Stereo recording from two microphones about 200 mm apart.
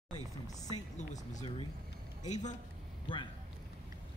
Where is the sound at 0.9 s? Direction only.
35° left (ahead or behind).